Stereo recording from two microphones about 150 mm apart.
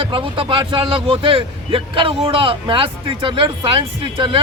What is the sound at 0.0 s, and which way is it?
Speech, 35° right (ahead or behind).